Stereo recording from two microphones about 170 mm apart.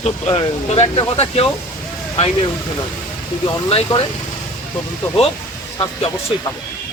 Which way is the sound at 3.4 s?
30° left (ahead or behind).